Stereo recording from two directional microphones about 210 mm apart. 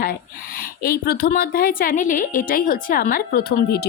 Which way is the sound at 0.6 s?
45° left (ahead or behind).